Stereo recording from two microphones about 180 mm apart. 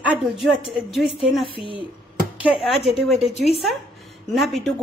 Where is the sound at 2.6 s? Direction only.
Centre (ahead or behind).